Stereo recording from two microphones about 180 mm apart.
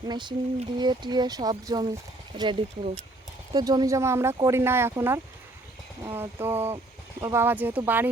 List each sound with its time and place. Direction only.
0.1 s speech: 25° right (ahead or behind); by 8.1 s 10° right (ahead or behind)